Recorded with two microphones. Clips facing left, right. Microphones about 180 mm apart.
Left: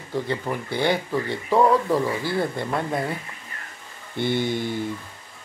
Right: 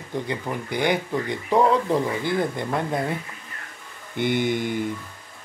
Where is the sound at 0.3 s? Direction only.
15° right (ahead or behind).